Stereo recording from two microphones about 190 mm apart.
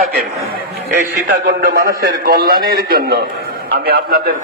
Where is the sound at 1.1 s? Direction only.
55° right (ahead or behind).